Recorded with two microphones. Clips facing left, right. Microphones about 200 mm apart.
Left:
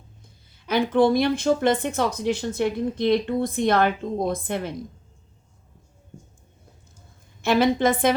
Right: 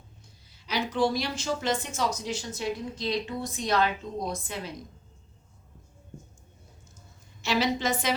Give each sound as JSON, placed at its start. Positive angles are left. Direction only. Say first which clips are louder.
{"t": 0.5, "sound": "a woman's voice", "louder": "left 9 dB", "side_deg": 55}
{"t": 7.4, "sound": "a woman's voice", "louder": "left 8 dB", "side_deg": 55}